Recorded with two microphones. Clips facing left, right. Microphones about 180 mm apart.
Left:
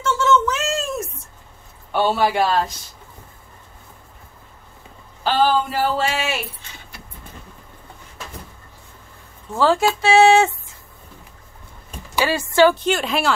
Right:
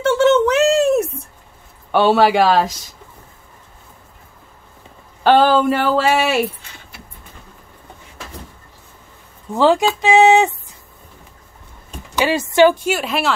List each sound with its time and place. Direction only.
0.0 s a sound: 65° right (ahead or behind)
1.9 s speech: 90° right
5.2 s speech: 65° right (ahead or behind)
9.5 s a woman's voice: 15° right (ahead or behind)
12.2 s a woman's voice: 20° right (ahead or behind); by 13.3 s centre (ahead or behind)